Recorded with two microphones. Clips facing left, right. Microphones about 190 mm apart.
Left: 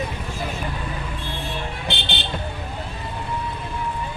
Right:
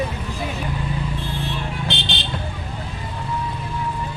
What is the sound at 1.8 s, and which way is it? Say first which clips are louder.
Vehicle: right 1 dB; 60° left (ahead or behind).